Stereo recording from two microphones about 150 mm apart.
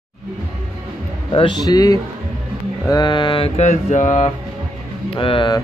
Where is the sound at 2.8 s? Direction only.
30° left (ahead or behind); by 4.2 s 55° left (ahead or behind).